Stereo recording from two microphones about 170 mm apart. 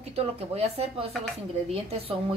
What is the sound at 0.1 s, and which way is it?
A woman's voice, 40° right (ahead or behind).